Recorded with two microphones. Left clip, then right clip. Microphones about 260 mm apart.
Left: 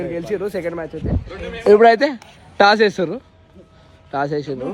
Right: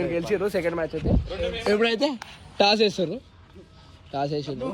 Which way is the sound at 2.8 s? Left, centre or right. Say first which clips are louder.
Left 6 dB; centre.